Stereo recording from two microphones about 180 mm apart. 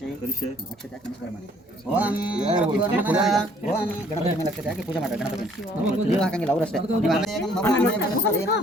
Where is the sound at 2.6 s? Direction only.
5° right (ahead or behind).